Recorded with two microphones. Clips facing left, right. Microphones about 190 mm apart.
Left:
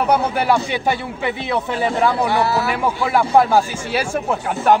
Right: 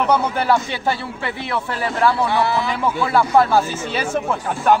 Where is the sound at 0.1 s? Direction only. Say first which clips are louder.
Left 2 dB; 15° left (ahead or behind).